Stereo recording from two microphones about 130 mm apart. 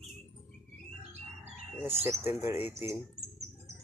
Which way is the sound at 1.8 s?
15° right (ahead or behind).